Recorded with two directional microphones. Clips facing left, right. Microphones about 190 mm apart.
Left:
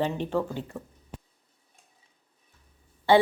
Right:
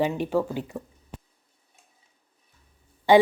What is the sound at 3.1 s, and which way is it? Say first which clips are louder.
Speech: right 3 dB; 15° right (ahead or behind).